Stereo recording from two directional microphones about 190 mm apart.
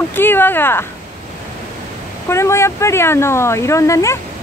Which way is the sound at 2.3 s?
15° left (ahead or behind).